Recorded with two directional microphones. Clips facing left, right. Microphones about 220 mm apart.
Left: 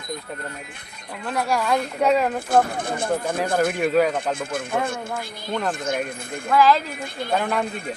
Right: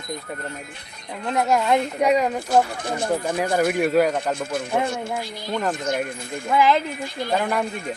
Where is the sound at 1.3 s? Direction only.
20° right (ahead or behind).